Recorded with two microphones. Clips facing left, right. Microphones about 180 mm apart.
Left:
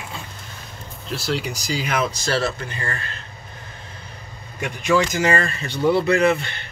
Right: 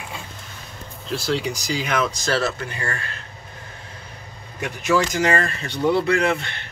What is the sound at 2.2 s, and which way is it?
Speech, 30° left (ahead or behind).